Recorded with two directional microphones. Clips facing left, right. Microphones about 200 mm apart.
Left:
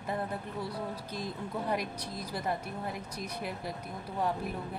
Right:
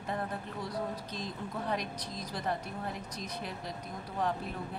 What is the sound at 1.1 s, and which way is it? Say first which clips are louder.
Speech: left 2 dB; 10° left (ahead or behind).